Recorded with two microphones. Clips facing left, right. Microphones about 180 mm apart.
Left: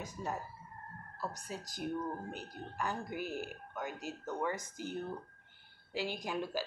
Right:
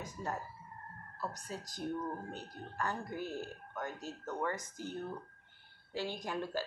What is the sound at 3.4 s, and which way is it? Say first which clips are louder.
Speech: even; 10° left (ahead or behind).